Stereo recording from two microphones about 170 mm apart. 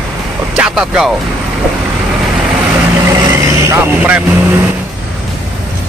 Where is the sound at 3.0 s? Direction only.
20° right (ahead or behind).